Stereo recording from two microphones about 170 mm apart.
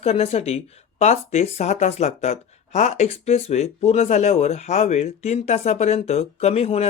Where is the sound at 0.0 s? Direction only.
40° left (ahead or behind).